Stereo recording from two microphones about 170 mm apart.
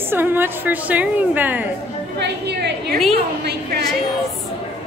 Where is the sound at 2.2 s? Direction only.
75° right (ahead or behind).